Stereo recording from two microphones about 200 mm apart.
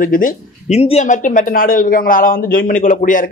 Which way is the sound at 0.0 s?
45° left (ahead or behind).